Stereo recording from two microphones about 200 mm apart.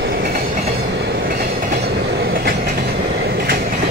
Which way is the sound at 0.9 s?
60° right (ahead or behind).